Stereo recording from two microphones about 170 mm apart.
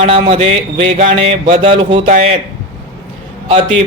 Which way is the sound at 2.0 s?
45° right (ahead or behind).